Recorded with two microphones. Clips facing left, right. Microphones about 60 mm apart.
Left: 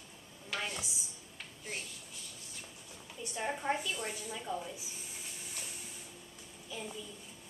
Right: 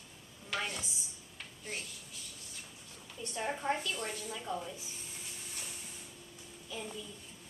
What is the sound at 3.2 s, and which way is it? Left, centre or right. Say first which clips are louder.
A woman's voice: even; centre.